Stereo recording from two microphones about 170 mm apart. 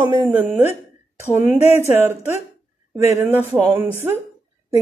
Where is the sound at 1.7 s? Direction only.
10° right (ahead or behind).